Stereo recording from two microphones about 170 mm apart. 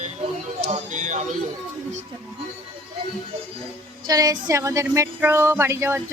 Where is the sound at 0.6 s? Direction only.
45° right (ahead or behind).